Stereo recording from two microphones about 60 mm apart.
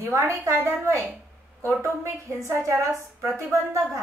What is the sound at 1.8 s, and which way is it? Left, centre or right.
A woman's voice, right.